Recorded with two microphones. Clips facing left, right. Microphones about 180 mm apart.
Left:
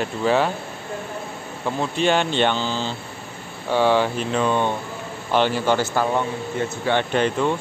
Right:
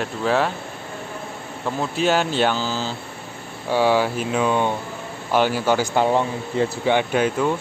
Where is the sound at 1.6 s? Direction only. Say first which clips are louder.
Even; 5° right (ahead or behind).